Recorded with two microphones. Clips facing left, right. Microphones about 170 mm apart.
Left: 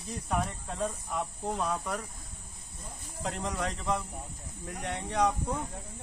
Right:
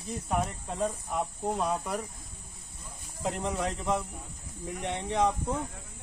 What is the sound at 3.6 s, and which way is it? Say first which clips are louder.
Speech: right 2 dB; centre (ahead or behind).